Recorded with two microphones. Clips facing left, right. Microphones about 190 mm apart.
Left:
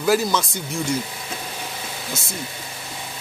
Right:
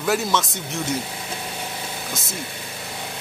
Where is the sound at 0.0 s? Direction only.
Centre (ahead or behind).